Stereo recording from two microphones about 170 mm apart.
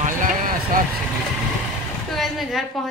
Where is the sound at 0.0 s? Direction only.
50° right (ahead or behind).